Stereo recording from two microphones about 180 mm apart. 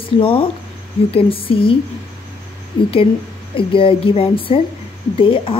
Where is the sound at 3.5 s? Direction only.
30° left (ahead or behind).